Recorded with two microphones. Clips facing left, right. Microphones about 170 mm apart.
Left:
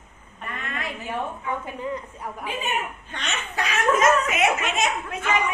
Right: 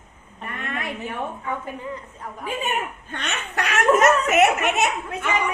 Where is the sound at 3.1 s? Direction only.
60° right (ahead or behind).